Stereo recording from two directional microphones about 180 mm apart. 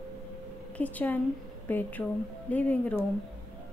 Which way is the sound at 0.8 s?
10° left (ahead or behind).